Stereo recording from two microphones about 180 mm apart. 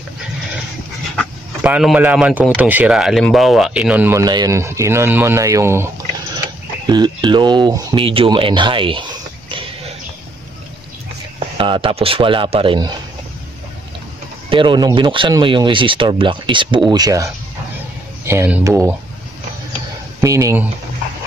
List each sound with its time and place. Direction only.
1.6 s speech: 5° right (ahead or behind)
6.9 s speech: 25° right (ahead or behind)
11.3 s speech: 30° right (ahead or behind)
14.5 s speech: 25° right (ahead or behind)
20.2 s speech: 15° right (ahead or behind)